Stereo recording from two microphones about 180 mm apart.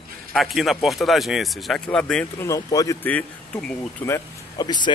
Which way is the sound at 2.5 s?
20° left (ahead or behind).